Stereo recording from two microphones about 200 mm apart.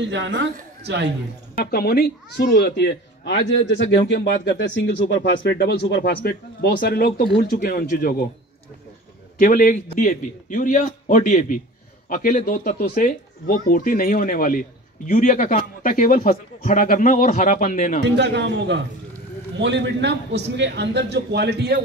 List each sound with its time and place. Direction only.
0.0 s a man's voice: 65° right (ahead or behind)
1.6 s speech: 50° left (ahead or behind)
9.4 s a man's voice: 45° left (ahead or behind)
18.0 s a man's voice: 60° right (ahead or behind)